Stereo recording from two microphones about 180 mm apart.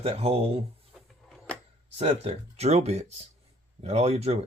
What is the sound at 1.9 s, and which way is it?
Speech, 35° right (ahead or behind).